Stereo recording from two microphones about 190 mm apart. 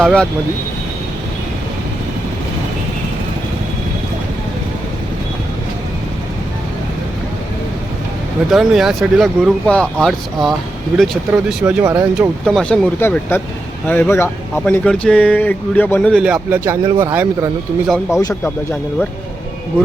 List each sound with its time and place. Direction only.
0.0 s speech: 5° left (ahead or behind)
8.4 s speech: centre (ahead or behind)
12.5 s speech: 5° left (ahead or behind)
16.2 s speech: 5° right (ahead or behind)
17.8 s speech: centre (ahead or behind)